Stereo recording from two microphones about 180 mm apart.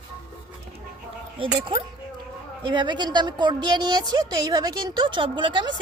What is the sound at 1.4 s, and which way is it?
A woman's voice, 30° right (ahead or behind).